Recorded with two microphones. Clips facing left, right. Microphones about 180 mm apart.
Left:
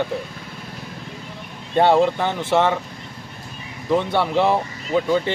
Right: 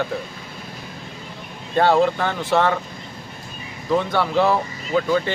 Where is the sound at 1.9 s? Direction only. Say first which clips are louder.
Left 1 dB; 20° left (ahead or behind).